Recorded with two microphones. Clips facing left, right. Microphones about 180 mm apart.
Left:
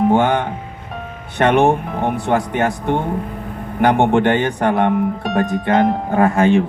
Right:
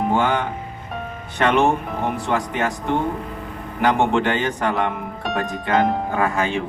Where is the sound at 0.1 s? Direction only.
55° left (ahead or behind).